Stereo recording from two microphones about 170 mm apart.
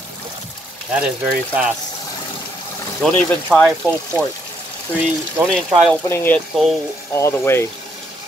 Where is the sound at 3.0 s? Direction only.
10° left (ahead or behind).